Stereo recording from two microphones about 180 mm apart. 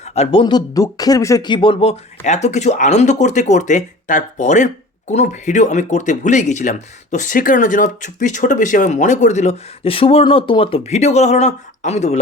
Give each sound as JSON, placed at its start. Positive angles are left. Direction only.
{"t": 0.0, "sound": "speech", "side_deg": 35}